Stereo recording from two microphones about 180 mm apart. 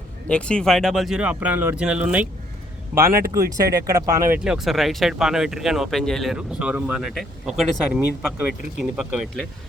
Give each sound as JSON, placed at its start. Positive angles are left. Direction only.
{"t": 0.3, "sound": "speech", "side_deg": 5}
{"t": 3.1, "sound": "speech", "side_deg": -55}
{"t": 3.3, "sound": "speech", "side_deg": -20}
{"t": 4.4, "sound": "speech", "side_deg": 0}